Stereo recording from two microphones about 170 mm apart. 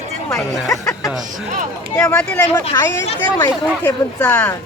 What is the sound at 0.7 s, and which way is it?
Speech, 20° left (ahead or behind).